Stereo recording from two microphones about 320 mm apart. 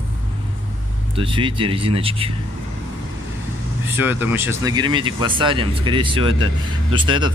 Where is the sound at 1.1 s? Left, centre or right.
Centre.